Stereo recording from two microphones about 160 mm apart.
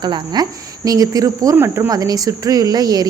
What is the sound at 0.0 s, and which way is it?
A woman's voice, 30° right (ahead or behind).